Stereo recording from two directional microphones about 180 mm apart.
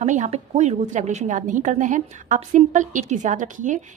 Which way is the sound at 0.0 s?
40° right (ahead or behind).